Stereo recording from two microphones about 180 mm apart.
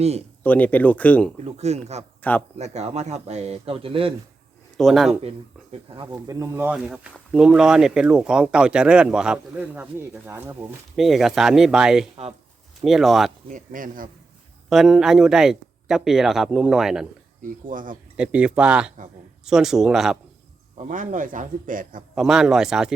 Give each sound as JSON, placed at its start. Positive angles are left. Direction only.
{"t": 0.0, "sound": "speech", "side_deg": -35}
{"t": 0.4, "sound": "speech", "side_deg": 10}
{"t": 1.5, "sound": "speech", "side_deg": -35}
{"t": 4.8, "sound": "speech", "side_deg": 0}
{"t": 5.9, "sound": "speech", "side_deg": -25}
{"t": 10.9, "sound": "speech", "side_deg": 0}
{"t": 13.5, "sound": "a man's voice", "side_deg": -45}
{"t": 14.7, "sound": "speech", "side_deg": 0}
{"t": 17.4, "sound": "a man's voice", "side_deg": -50}
{"t": 18.2, "sound": "speech", "side_deg": -5}
{"t": 20.7, "sound": "a man's voice", "side_deg": -45}
{"t": 22.1, "sound": "speech", "side_deg": 0}